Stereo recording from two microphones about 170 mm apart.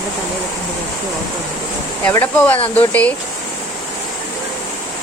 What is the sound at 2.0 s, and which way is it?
Speech, 10° left (ahead or behind).